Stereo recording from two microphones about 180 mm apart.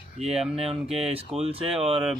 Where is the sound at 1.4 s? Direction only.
35° right (ahead or behind).